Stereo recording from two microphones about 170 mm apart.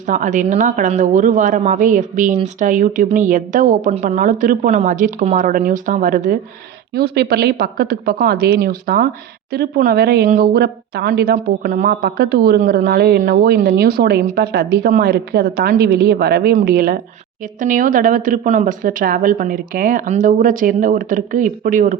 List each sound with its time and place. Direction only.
0.1 s speech: 50° right (ahead or behind)
6.9 s speech: 70° right (ahead or behind); by 21.9 s 50° right (ahead or behind)